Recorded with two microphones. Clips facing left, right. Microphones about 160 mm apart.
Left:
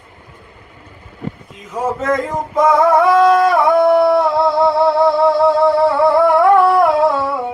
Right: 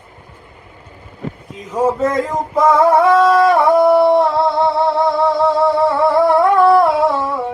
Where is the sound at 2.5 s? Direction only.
Centre (ahead or behind).